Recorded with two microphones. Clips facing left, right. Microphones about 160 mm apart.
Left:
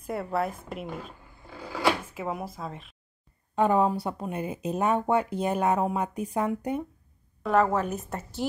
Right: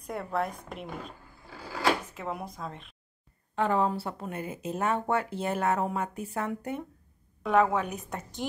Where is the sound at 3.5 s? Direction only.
15° left (ahead or behind).